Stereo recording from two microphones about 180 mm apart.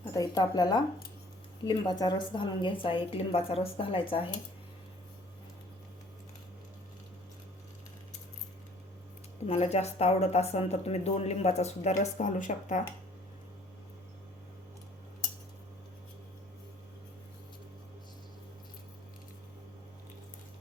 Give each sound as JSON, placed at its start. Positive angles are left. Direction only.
{"t": 0.0, "sound": "a woman's voice", "side_deg": 20}
{"t": 9.5, "sound": "speech", "side_deg": 35}